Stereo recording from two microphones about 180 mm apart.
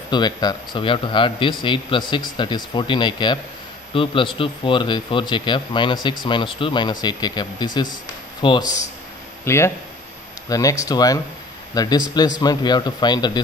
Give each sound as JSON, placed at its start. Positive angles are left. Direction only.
{"t": 0.1, "sound": "speech", "side_deg": 25}
{"t": 9.4, "sound": "speech", "side_deg": 15}